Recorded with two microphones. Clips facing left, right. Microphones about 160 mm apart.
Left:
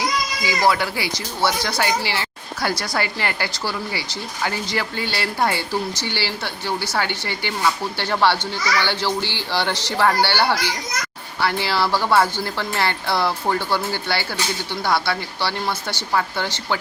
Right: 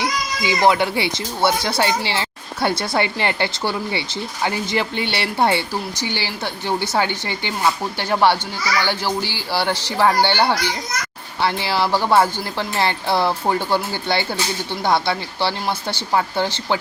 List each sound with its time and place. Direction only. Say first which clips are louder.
0.4 s speech: right 4 dB; 20° right (ahead or behind)